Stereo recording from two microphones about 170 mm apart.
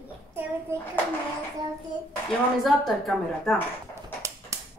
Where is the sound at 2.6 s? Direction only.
Centre (ahead or behind).